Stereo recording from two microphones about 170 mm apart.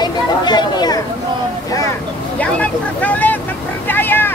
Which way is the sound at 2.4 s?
10° left (ahead or behind).